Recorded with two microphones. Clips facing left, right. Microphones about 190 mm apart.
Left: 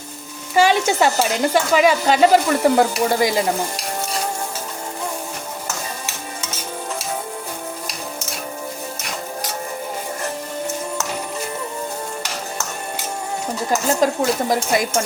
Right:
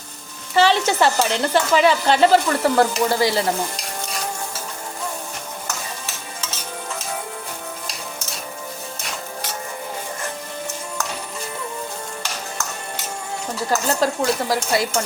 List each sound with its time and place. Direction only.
0.5 s speech: 10° left (ahead or behind)
13.7 s speech: 15° left (ahead or behind)